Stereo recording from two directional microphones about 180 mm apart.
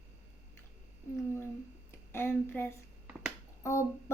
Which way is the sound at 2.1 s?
10° left (ahead or behind).